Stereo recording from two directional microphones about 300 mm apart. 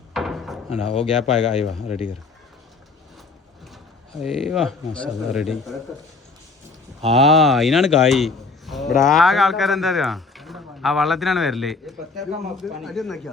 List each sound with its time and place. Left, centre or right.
0.1 s speech: centre
4.2 s a man's voice: centre
7.2 s a man's voice: centre